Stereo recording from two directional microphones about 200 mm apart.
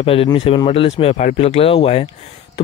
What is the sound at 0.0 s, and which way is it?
Speech, 30° left (ahead or behind).